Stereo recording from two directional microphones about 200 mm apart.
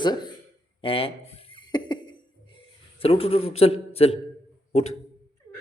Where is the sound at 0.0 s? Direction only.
20° left (ahead or behind).